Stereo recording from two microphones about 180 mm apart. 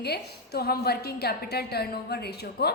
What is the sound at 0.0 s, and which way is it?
A woman's voice, 60° left (ahead or behind).